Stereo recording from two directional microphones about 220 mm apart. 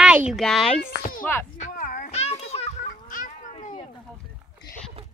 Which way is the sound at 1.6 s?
40° left (ahead or behind).